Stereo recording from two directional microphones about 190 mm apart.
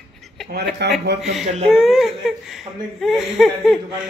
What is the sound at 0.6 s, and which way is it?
Speech, 60° right (ahead or behind).